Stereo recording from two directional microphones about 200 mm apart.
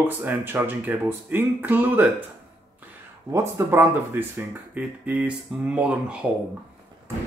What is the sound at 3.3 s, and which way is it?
Speech, 15° right (ahead or behind).